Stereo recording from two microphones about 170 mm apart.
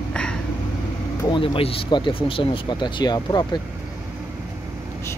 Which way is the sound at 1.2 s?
30° left (ahead or behind).